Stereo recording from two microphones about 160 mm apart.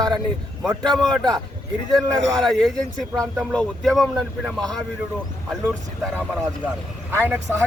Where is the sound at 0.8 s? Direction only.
5° left (ahead or behind).